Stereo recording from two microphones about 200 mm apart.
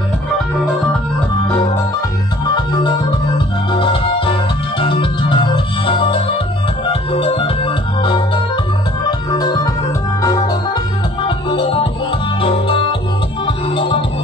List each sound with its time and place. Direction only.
2.4 s organ: 20° left (ahead or behind)
3.8 s music: 25° left (ahead or behind)
6.9 s organ: 30° left (ahead or behind)
9.3 s organ: 20° left (ahead or behind)
10.2 s music: 20° left (ahead or behind)